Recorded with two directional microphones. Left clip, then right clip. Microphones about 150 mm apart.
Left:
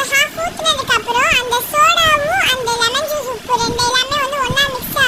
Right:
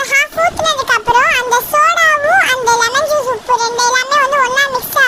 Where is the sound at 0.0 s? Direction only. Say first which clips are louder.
Right 4 dB; 45° right (ahead or behind).